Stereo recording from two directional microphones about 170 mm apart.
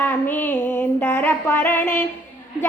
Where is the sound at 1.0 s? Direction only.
10° left (ahead or behind).